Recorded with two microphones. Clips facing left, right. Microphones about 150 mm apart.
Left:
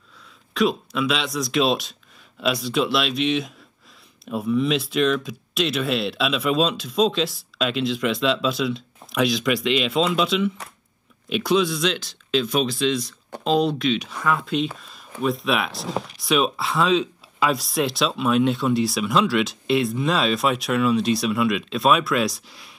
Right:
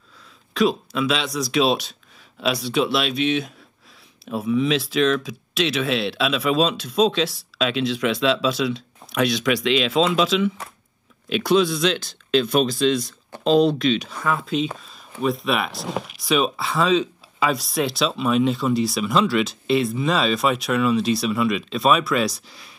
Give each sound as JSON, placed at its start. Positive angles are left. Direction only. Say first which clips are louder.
{"t": 0.6, "sound": "speech", "louder": "right 1 dB", "side_deg": 0}
{"t": 12.4, "sound": "speech", "louder": "right 3 dB", "side_deg": -45}
{"t": 13.4, "sound": "speech", "louder": "right 3 dB", "side_deg": 5}